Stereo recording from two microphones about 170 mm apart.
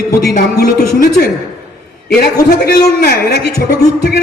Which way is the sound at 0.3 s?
65° left (ahead or behind).